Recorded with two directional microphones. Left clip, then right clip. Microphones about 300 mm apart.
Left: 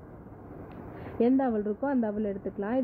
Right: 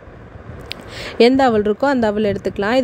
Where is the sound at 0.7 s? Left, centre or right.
Right.